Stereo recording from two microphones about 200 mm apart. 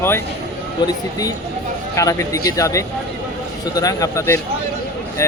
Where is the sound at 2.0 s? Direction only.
15° left (ahead or behind).